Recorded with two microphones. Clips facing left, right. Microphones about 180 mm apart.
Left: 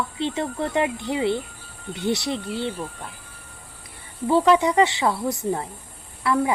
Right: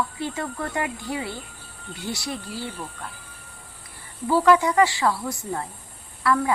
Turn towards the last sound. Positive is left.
turn(degrees=20)  # may be behind; listen again after turning